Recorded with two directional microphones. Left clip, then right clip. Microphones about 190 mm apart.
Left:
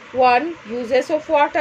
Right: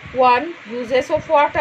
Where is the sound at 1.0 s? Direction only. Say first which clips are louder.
Right 2 dB; 45° left (ahead or behind).